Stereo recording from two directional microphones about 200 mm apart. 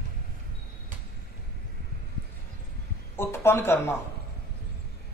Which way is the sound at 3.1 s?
10° left (ahead or behind).